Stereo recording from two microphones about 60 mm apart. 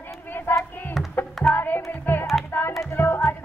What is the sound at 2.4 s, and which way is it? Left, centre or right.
Music, left.